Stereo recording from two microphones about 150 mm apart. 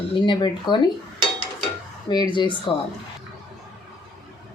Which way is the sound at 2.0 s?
30° left (ahead or behind).